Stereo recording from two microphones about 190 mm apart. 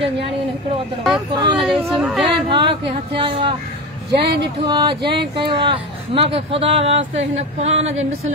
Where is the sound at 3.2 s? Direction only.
25° right (ahead or behind).